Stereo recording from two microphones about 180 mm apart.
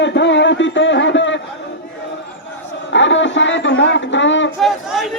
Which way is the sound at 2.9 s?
90° left.